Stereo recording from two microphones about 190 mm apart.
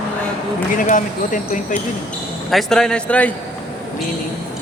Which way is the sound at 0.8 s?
45° left (ahead or behind).